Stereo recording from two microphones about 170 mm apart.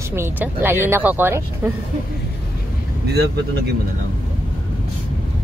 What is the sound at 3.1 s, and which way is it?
Speech, 75° right (ahead or behind).